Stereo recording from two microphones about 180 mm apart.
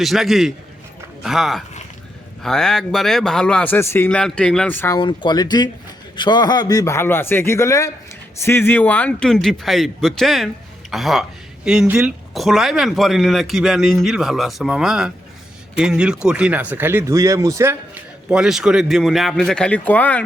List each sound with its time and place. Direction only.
0.0 s a woman's voice: centre (ahead or behind)
4.9 s a man's voice: 25° left (ahead or behind); by 17.7 s 15° right (ahead or behind)
18.3 s a woman's voice: 5° right (ahead or behind)